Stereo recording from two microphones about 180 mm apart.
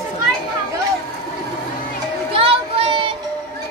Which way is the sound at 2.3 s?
30° right (ahead or behind).